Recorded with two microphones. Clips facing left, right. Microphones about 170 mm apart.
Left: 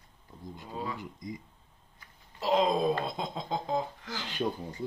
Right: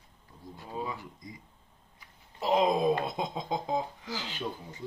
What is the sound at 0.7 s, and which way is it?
Speech, 15° right (ahead or behind).